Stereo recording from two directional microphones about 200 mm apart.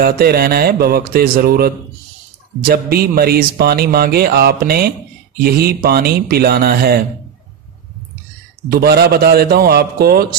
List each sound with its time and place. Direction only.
0.0 s speech: 50° right (ahead or behind)
8.6 s speech: 50° right (ahead or behind)